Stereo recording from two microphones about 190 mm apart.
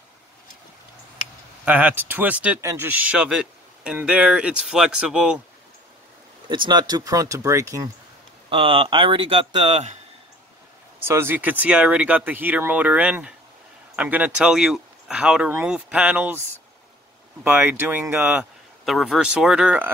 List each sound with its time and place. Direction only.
1.6 s speech: 10° right (ahead or behind)
6.7 s speech: 20° right (ahead or behind)
8.5 s speech: 30° right (ahead or behind)
11.0 s speech: 10° right (ahead or behind)
17.4 s speech: 10° right (ahead or behind)